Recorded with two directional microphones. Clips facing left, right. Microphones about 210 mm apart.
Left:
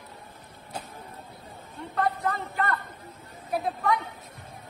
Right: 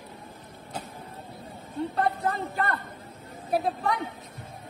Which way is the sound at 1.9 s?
30° right (ahead or behind).